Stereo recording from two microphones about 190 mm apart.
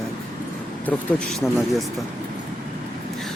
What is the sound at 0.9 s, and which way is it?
Speech, 5° left (ahead or behind).